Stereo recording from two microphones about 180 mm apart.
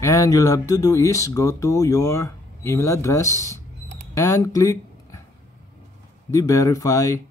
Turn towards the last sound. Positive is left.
turn(degrees=20)  # may be behind; listen again after turning